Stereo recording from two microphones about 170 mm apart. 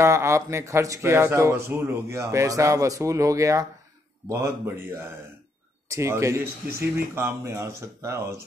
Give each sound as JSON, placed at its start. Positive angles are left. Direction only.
{"t": 0.0, "sound": "speech", "side_deg": -15}